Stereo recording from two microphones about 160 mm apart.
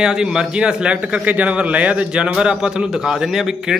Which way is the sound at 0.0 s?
5° right (ahead or behind).